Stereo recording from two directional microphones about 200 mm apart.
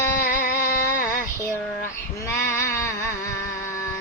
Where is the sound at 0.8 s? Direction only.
15° left (ahead or behind).